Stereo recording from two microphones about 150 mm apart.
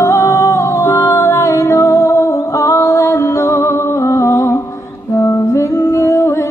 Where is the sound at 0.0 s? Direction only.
20° left (ahead or behind).